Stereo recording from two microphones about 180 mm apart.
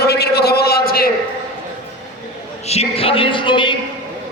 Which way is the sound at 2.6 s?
35° left (ahead or behind).